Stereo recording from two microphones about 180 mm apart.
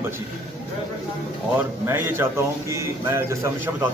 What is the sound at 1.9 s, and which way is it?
A man's voice, 15° right (ahead or behind).